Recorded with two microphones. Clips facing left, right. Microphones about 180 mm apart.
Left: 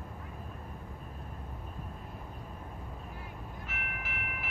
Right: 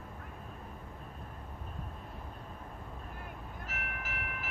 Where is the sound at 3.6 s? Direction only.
40° right (ahead or behind).